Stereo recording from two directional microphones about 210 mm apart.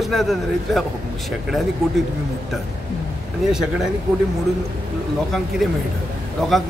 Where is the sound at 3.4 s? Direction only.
Centre (ahead or behind).